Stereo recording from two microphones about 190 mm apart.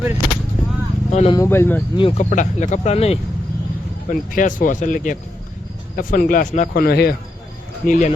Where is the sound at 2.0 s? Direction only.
30° left (ahead or behind).